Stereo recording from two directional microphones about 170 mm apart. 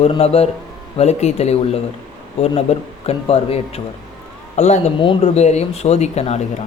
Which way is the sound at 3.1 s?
35° left (ahead or behind).